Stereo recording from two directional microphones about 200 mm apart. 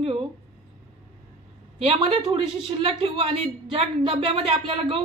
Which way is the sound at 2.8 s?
25° right (ahead or behind).